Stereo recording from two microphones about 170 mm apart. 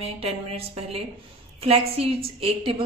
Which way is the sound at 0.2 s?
35° right (ahead or behind).